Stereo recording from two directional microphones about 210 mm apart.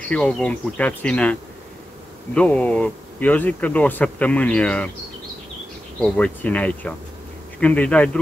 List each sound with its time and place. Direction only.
0.0 s speech: 5° left (ahead or behind)
5.9 s speech: 5° left (ahead or behind)